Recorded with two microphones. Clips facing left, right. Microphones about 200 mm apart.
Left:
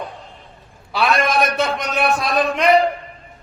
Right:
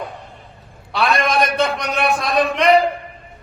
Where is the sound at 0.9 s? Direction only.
Centre (ahead or behind).